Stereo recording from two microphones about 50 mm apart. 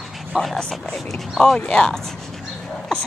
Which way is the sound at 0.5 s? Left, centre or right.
Centre.